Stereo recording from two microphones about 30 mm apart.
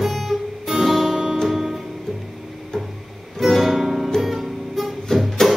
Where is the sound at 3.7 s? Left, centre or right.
Centre.